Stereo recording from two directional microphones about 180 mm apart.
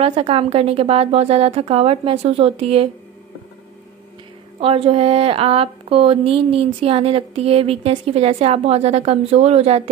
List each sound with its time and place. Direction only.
0.0 s a woman's voice: 30° right (ahead or behind)
4.6 s a woman's voice: 30° right (ahead or behind)